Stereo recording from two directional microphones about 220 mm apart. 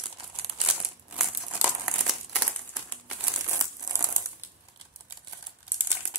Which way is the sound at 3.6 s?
20° right (ahead or behind).